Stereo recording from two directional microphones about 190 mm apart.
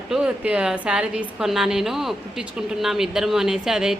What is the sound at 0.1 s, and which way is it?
A woman's voice, 5° right (ahead or behind).